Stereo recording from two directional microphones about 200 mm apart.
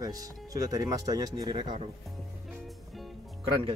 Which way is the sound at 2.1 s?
Centre (ahead or behind).